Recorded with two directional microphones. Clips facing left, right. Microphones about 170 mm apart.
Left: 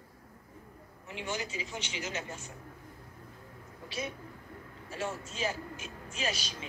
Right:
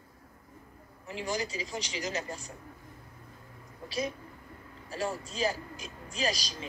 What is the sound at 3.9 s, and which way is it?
A man's voice, 40° right (ahead or behind).